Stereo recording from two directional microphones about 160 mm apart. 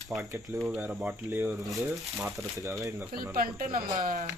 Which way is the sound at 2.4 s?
20° right (ahead or behind).